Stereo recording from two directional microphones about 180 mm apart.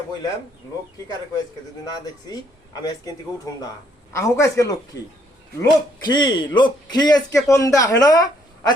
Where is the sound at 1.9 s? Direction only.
20° left (ahead or behind).